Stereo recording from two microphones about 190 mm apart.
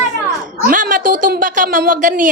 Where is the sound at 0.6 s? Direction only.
45° right (ahead or behind).